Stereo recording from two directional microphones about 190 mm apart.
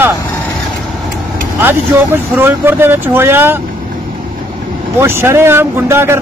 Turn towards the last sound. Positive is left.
turn(degrees=-15)  # may be behind; listen again after turning